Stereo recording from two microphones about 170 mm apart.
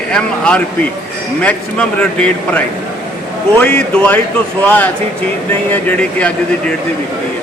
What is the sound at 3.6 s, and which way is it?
Speech, 10° left (ahead or behind).